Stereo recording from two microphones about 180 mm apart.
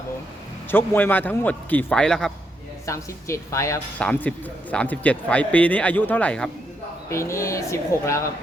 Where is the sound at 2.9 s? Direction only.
15° left (ahead or behind).